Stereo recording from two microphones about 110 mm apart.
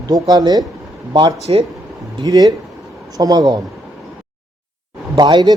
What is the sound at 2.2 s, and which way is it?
Speech, 35° right (ahead or behind).